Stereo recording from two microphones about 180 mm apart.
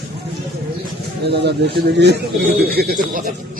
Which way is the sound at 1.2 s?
70° right (ahead or behind).